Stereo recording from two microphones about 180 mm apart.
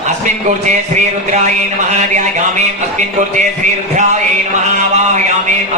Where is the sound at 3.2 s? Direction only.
45° right (ahead or behind).